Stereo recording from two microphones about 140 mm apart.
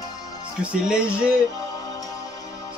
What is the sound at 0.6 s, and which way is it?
Music, 5° right (ahead or behind).